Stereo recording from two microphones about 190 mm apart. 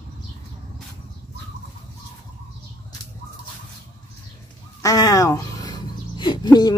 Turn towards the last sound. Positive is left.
turn(degrees=20)  # may be behind; listen again after turning